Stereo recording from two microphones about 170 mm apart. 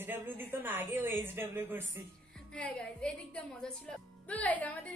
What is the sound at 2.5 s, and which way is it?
A woman's voice, 5° left (ahead or behind).